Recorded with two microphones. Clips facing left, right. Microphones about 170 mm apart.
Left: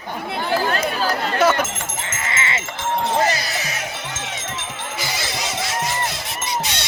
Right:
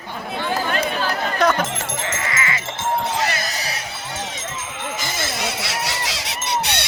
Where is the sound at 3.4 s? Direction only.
40° right (ahead or behind).